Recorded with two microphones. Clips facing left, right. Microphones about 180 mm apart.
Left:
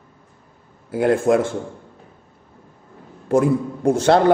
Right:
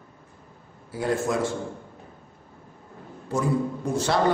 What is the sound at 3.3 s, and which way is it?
Speech, 65° left (ahead or behind).